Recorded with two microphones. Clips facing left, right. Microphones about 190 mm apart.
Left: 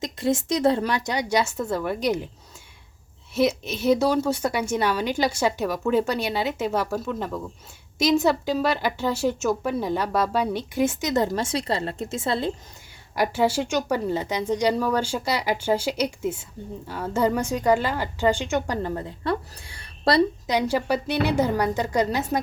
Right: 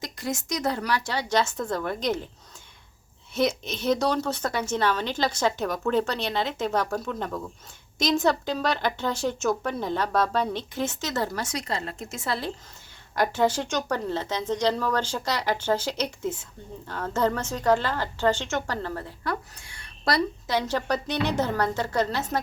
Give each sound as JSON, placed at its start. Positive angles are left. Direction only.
{"t": 0.0, "sound": "a woman's voice", "side_deg": 30}
{"t": 3.3, "sound": "a woman's voice", "side_deg": 5}
{"t": 13.1, "sound": "a woman's voice", "side_deg": 10}
{"t": 20.5, "sound": "a woman's voice", "side_deg": 15}